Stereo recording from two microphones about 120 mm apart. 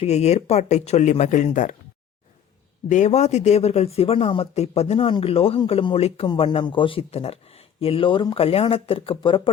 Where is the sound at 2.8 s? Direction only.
85° left.